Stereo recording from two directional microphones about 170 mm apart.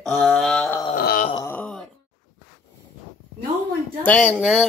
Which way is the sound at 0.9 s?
55° left (ahead or behind).